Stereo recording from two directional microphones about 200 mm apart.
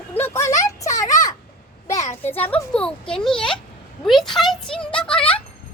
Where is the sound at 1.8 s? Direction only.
15° left (ahead or behind).